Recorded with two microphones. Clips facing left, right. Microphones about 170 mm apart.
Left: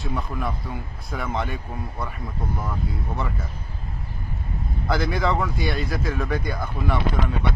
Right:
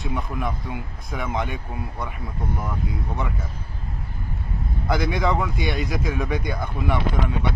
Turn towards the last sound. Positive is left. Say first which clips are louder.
# even
turn(degrees=0)  # may be behind; listen again after turning